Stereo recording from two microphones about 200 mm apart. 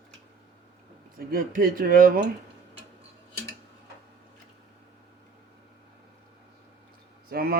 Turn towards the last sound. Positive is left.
turn(degrees=-50)  # may be behind; listen again after turning